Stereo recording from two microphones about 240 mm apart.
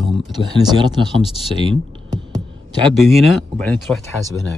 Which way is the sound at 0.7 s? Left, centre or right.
Centre.